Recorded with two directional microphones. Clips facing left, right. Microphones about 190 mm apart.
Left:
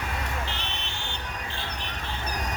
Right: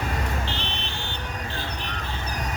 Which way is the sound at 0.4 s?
30° right (ahead or behind).